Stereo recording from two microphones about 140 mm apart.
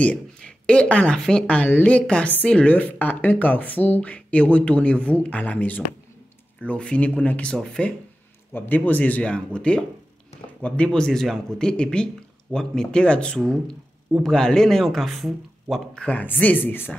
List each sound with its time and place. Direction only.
0.0 s speech: 10° left (ahead or behind)